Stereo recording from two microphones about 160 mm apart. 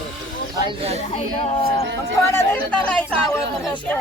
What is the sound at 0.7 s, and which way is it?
Speech, 40° right (ahead or behind).